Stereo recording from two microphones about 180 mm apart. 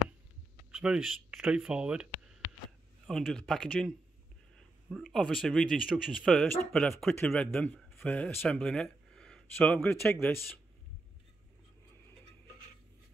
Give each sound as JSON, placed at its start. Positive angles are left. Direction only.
{"t": 0.7, "sound": "speech", "side_deg": -5}
{"t": 5.1, "sound": "speech", "side_deg": 5}